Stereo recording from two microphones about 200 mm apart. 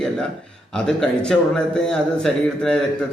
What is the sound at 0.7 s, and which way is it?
A man's voice, 5° left (ahead or behind).